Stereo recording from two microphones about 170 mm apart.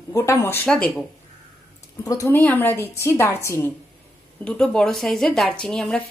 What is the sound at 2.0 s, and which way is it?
A woman's voice, 20° left (ahead or behind).